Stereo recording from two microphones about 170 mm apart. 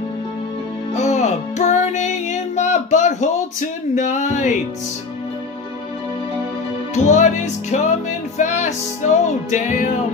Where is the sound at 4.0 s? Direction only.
45° left (ahead or behind).